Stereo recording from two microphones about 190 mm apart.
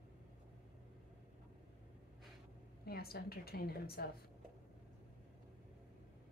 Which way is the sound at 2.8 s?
55° left (ahead or behind).